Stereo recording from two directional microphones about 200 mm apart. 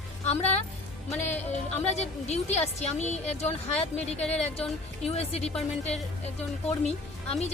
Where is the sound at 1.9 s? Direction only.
35° left (ahead or behind).